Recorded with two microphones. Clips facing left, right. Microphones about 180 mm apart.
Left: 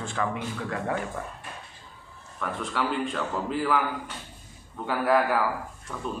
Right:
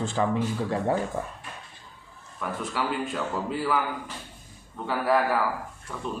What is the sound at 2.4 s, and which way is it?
A man's voice, 5° right (ahead or behind).